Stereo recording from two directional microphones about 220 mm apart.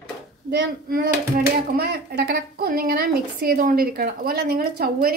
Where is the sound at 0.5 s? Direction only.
50° right (ahead or behind).